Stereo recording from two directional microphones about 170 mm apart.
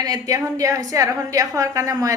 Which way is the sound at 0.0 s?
20° right (ahead or behind).